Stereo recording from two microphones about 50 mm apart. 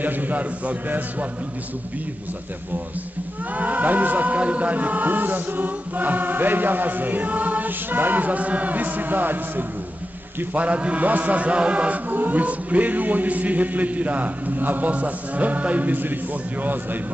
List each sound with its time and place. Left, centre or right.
0.0 s chant: right
3.5 s chant: right
10.5 s chant: right